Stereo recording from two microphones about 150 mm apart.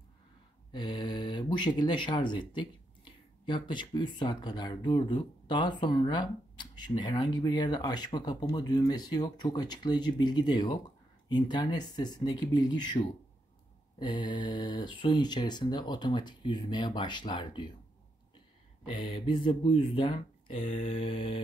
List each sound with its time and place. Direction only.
0.7 s speech: 30° left (ahead or behind)
18.9 s speech: 35° left (ahead or behind)